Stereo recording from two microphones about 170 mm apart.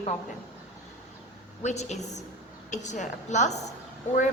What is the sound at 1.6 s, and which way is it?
A woman's voice, 40° left (ahead or behind).